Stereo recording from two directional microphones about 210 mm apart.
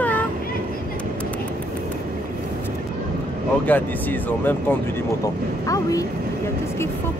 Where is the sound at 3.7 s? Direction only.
10° left (ahead or behind).